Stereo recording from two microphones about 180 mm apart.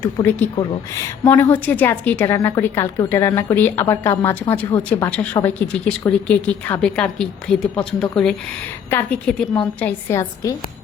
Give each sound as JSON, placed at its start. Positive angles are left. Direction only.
{"t": 0.0, "sound": "a woman's voice", "side_deg": 10}
{"t": 0.5, "sound": "speech", "side_deg": 20}
{"t": 1.3, "sound": "a woman's voice", "side_deg": 10}